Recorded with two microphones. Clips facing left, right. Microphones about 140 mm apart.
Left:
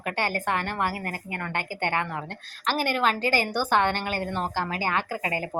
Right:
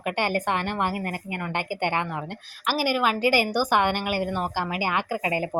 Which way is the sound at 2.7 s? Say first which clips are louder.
Right 1 dB; 5° right (ahead or behind).